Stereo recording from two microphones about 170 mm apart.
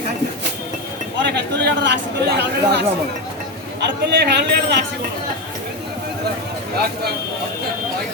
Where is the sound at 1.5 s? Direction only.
90° right.